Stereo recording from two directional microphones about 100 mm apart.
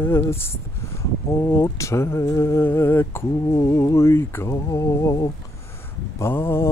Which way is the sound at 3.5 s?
30° left (ahead or behind).